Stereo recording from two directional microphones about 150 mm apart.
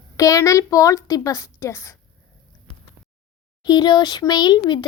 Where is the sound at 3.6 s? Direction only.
30° left (ahead or behind).